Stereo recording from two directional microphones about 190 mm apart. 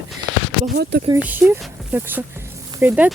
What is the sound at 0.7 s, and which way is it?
Speech, 55° right (ahead or behind).